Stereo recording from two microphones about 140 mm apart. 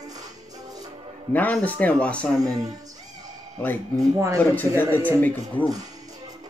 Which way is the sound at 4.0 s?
20° right (ahead or behind).